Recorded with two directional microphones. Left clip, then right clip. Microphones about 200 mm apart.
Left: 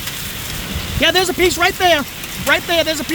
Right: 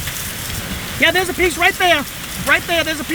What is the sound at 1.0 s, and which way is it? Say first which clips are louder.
Speech: left 1 dB; 15° left (ahead or behind).